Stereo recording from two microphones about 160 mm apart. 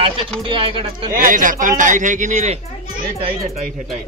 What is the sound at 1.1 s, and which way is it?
Speech, 55° right (ahead or behind).